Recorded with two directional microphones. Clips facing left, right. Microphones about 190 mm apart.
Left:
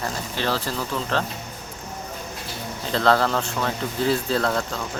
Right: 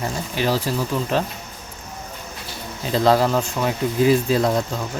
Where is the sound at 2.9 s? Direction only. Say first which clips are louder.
Right 3 dB; 15° right (ahead or behind).